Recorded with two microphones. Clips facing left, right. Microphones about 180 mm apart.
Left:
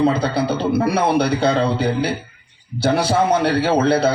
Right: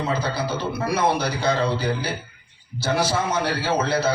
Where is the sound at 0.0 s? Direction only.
60° left (ahead or behind).